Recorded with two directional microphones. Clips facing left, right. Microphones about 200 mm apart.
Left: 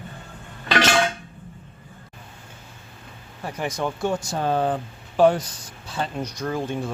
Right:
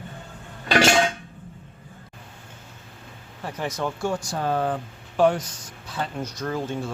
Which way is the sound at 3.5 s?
10° left (ahead or behind).